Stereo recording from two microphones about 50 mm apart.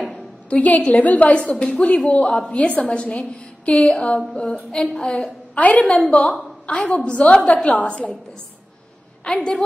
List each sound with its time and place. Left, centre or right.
0.1 s a woman's voice: left
5.0 s a woman's voice: centre
9.2 s a woman's voice: centre